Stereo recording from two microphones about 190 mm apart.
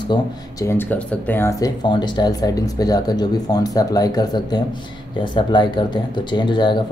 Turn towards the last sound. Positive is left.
turn(degrees=25)  # may be behind; listen again after turning